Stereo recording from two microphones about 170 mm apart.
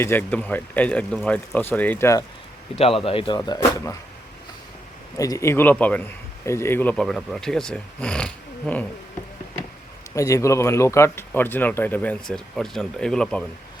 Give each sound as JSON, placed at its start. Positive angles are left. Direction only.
{"t": 0.0, "sound": "a man's voice", "side_deg": 10}
{"t": 2.7, "sound": "speech", "side_deg": 35}
{"t": 5.1, "sound": "a man's voice", "side_deg": 20}
{"t": 10.2, "sound": "a man's voice", "side_deg": 20}